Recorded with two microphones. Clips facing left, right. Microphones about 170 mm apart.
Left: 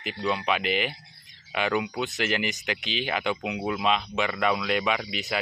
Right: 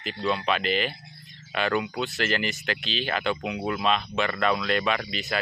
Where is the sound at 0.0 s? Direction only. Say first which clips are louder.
Right 1 dB; 10° left (ahead or behind).